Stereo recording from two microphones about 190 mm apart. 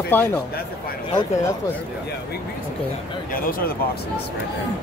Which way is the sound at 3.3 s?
50° left (ahead or behind).